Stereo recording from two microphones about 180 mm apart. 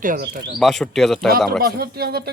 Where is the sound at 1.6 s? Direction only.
60° right (ahead or behind).